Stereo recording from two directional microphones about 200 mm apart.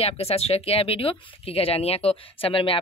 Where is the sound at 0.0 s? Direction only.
30° left (ahead or behind).